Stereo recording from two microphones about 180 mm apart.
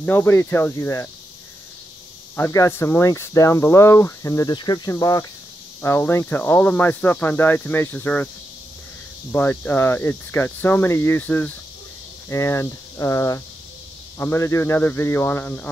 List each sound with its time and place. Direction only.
0.0 s speech: 15° left (ahead or behind)
2.3 s speech: 15° left (ahead or behind)
9.3 s speech: 10° left (ahead or behind)